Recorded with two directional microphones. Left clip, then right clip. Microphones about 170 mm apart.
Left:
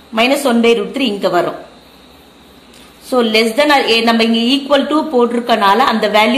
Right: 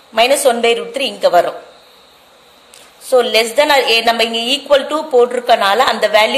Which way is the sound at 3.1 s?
40° right (ahead or behind).